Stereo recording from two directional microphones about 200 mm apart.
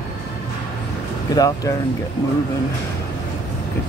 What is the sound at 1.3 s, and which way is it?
Speech, 20° left (ahead or behind).